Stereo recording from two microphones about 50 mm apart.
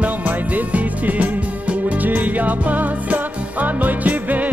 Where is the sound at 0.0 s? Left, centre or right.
Right.